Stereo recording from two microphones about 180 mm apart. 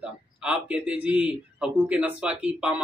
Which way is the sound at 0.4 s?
5° right (ahead or behind).